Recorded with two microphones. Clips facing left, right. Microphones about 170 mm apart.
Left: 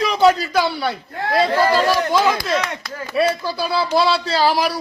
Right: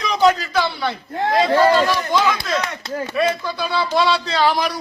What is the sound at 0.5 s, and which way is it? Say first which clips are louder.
Speech: left 2 dB; 10° left (ahead or behind).